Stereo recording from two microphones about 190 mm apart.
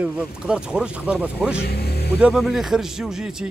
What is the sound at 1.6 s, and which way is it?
Music, 55° left (ahead or behind).